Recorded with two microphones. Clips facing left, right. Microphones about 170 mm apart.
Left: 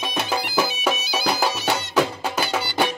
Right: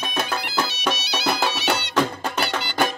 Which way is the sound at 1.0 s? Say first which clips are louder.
Left 1 dB; 70° right (ahead or behind).